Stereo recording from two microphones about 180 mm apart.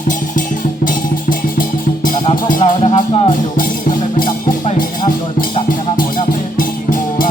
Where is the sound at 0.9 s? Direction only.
50° left (ahead or behind).